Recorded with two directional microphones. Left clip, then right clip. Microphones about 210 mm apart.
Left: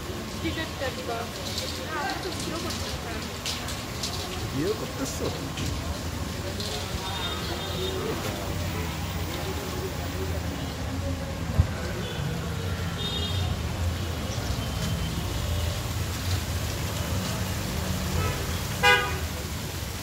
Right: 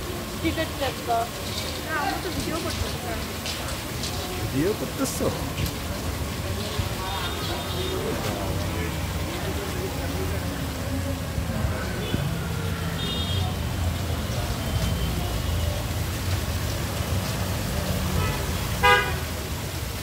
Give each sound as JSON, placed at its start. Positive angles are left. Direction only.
{"t": 18.8, "sound": "toot", "side_deg": 55}